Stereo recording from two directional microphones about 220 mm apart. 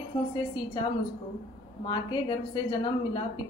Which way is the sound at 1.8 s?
20° left (ahead or behind).